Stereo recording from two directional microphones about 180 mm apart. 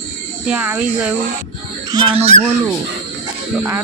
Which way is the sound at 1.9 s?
25° right (ahead or behind).